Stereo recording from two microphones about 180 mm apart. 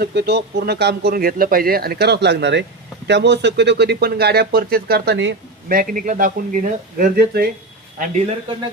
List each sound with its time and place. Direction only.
0.0 s speech: 70° right (ahead or behind)